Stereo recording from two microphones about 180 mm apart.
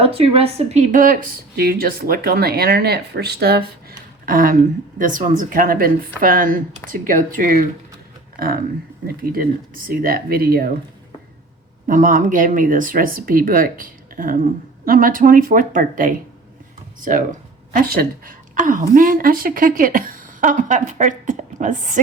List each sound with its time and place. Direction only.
0.0 s speech: 35° right (ahead or behind); by 7.7 s 50° right (ahead or behind)
9.3 s speech: 50° right (ahead or behind)
11.9 s a woman's voice: 45° right (ahead or behind)